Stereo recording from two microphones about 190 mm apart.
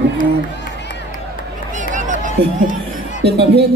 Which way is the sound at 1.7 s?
40° right (ahead or behind).